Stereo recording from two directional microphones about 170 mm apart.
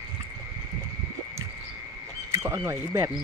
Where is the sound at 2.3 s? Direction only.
15° right (ahead or behind).